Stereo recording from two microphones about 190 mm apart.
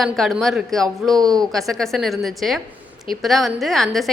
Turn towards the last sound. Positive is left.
turn(degrees=0)  # may be behind; listen again after turning